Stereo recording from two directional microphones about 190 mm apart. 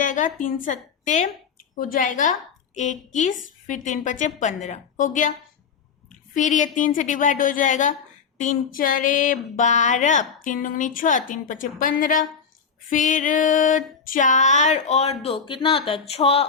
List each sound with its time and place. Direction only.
0.0 s a woman's voice: 45° left (ahead or behind)
2.7 s female singing: 40° left (ahead or behind)
6.1 s a sound: 40° left (ahead or behind)
12.9 s female singing: 40° left (ahead or behind)